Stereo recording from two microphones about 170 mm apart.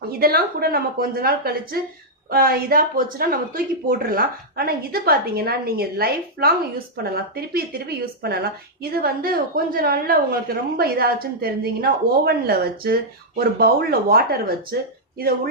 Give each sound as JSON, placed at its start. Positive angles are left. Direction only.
{"t": 0.1, "sound": "speech", "side_deg": -60}